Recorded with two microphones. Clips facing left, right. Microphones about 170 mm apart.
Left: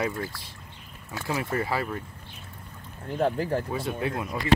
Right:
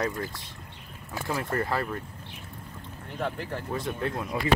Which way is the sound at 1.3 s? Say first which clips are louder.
Left 1 dB; 5° left (ahead or behind).